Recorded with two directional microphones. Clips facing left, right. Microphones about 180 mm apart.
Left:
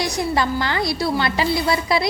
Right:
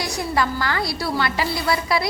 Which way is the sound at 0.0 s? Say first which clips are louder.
Left 2 dB; 20° left (ahead or behind).